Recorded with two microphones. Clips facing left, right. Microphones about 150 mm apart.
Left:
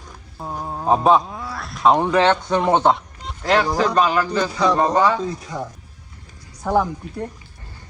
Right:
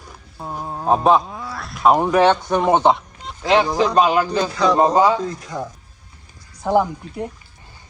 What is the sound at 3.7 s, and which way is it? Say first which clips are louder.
Speech: right 2 dB; 25° right (ahead or behind).